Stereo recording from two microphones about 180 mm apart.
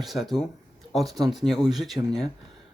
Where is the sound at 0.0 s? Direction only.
Centre (ahead or behind).